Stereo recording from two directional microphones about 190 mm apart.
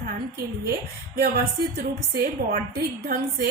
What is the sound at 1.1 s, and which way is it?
Speech, 60° right (ahead or behind).